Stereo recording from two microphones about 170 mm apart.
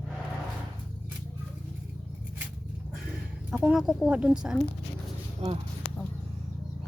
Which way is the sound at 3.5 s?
5° right (ahead or behind).